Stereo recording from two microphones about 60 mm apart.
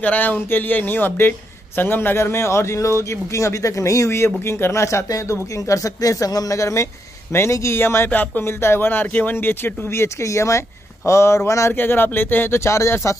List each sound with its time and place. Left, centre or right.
0.0 s a man's voice: left
6.6 s a man's voice: left
10.0 s speech: left
11.7 s a man's voice: left